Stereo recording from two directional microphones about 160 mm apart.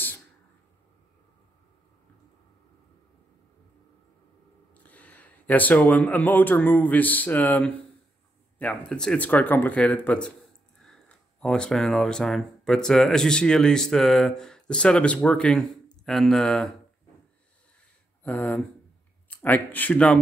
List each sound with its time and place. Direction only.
4.8 s speech: 10° left (ahead or behind)
18.2 s speech: 10° left (ahead or behind)